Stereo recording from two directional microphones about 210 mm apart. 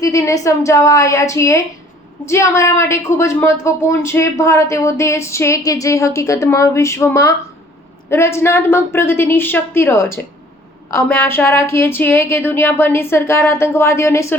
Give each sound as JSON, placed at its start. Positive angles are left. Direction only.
{"t": 0.0, "sound": "a woman's voice", "side_deg": 15}